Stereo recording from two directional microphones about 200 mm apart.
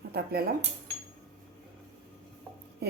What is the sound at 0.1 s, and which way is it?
Speech, 50° right (ahead or behind).